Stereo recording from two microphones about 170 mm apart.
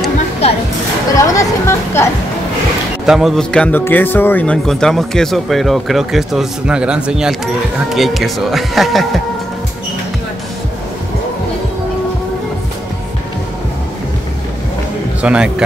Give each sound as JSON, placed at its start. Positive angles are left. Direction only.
{"t": 1.1, "sound": "a sound", "side_deg": 20}
{"t": 3.1, "sound": "speech", "side_deg": 0}
{"t": 15.2, "sound": "a man's voice", "side_deg": -5}